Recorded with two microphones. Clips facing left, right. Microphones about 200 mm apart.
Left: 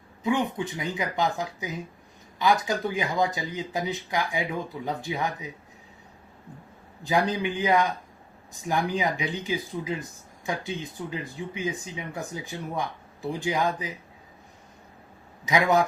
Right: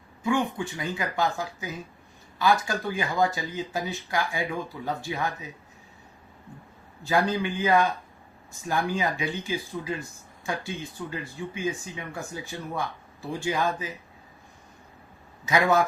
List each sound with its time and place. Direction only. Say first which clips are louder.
0.2 s speech: even; 20° left (ahead or behind)
7.0 s speech: even; 15° left (ahead or behind)
15.4 s speech: even; 15° left (ahead or behind)